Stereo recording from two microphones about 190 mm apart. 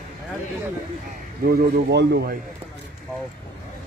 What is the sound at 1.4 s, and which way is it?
Speech, 55° right (ahead or behind).